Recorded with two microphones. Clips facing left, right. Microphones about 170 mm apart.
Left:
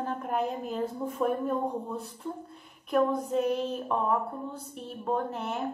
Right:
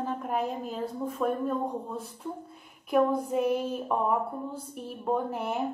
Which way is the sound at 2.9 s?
5° right (ahead or behind).